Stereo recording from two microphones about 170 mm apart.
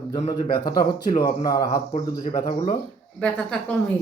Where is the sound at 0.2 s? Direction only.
30° left (ahead or behind).